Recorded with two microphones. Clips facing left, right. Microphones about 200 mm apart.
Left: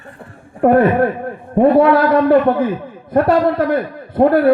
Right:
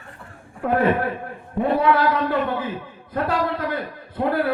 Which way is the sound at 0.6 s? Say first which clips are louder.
Left 8 dB; 55° left (ahead or behind).